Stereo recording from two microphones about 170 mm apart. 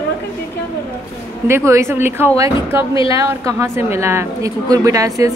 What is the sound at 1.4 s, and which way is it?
A woman's voice, 15° right (ahead or behind).